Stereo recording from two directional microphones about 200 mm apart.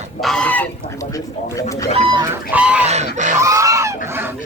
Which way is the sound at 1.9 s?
25° right (ahead or behind).